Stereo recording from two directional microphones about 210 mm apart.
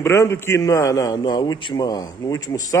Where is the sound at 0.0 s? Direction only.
15° left (ahead or behind).